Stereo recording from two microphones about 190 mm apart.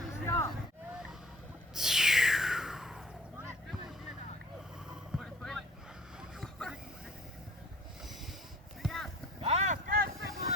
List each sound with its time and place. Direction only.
0.3 s a sound: 15° left (ahead or behind)
1.7 s music: centre (ahead or behind)
4.9 s vehicle: centre (ahead or behind)
8.8 s clip-clop: centre (ahead or behind)
9.4 s vehicle: 35° right (ahead or behind)